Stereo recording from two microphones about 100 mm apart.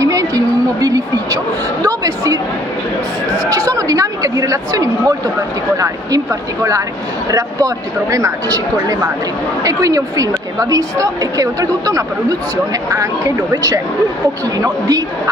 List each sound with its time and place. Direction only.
0.0 s a sound: 35° right (ahead or behind)
3.4 s chatter: 35° right (ahead or behind)
5.8 s a woman's voice: 35° right (ahead or behind)